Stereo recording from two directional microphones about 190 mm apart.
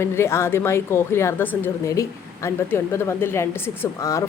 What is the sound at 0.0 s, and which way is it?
A woman's voice, 15° left (ahead or behind).